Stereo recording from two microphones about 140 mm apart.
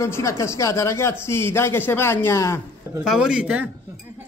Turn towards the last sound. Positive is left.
turn(degrees=-10)  # may be behind; listen again after turning